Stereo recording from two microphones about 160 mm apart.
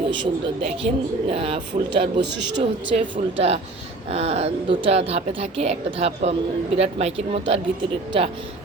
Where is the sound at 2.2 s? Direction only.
90° right.